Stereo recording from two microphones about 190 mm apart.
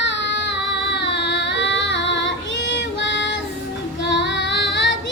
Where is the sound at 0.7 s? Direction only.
65° left (ahead or behind).